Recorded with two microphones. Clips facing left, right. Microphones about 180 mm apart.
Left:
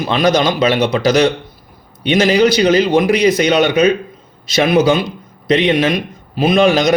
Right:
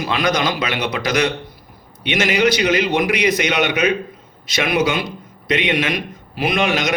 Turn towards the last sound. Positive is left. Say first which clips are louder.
# left 7 dB
turn(degrees=35)  # may be behind; listen again after turning